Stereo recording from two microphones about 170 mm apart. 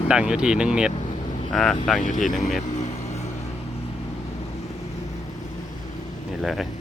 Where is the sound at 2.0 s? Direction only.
45° left (ahead or behind).